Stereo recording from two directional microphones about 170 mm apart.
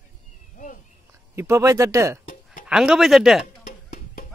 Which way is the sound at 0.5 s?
50° left (ahead or behind).